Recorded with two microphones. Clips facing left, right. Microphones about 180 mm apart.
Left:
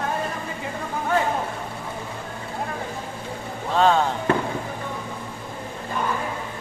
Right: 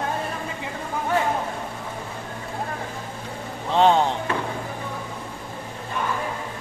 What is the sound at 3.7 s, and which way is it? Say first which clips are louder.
Speech: right 1 dB; 20° right (ahead or behind).